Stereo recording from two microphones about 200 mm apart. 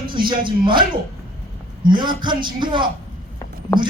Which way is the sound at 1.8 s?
25° right (ahead or behind).